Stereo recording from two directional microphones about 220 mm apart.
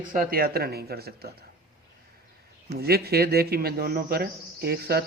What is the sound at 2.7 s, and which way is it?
Speech, 45° right (ahead or behind).